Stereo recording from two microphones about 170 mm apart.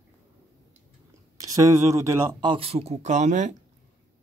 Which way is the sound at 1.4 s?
20° right (ahead or behind).